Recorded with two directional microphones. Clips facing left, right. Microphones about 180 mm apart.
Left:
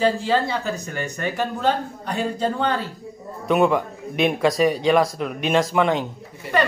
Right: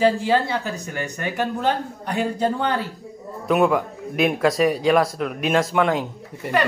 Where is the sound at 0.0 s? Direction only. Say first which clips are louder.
Right 1 dB; 10° right (ahead or behind).